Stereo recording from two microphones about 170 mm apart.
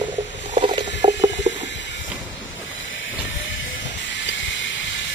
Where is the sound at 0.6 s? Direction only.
30° right (ahead or behind).